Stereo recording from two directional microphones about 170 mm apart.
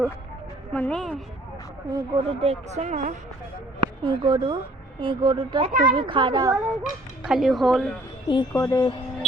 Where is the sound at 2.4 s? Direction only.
40° right (ahead or behind).